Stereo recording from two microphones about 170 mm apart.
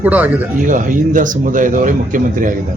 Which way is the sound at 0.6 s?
50° right (ahead or behind).